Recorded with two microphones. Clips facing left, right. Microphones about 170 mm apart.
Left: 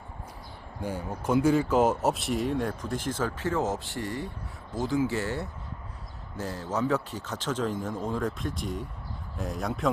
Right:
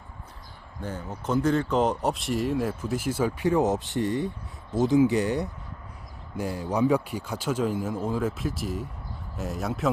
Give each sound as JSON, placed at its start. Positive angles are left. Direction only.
{"t": 0.8, "sound": "speech", "side_deg": 10}